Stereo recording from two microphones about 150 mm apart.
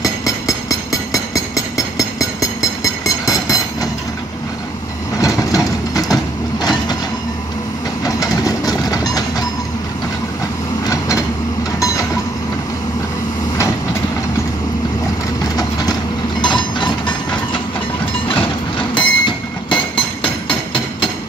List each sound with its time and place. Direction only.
0.0 s a sound: 20° left (ahead or behind)
5.2 s vehicle: 25° left (ahead or behind)
6.6 s train: 25° left (ahead or behind)
8.0 s vehicle: 25° left (ahead or behind)
11.8 s train: 20° left (ahead or behind)
15.5 s a sound: 25° left (ahead or behind)
18.3 s train: 35° left (ahead or behind)
20.4 s hammer: 35° left (ahead or behind)